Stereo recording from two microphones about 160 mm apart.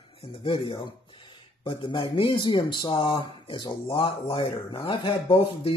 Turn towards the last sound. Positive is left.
turn(degrees=35)  # may be behind; listen again after turning